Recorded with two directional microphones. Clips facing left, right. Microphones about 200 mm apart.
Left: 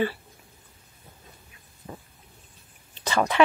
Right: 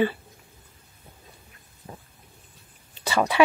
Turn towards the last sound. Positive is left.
turn(degrees=-10)  # may be behind; listen again after turning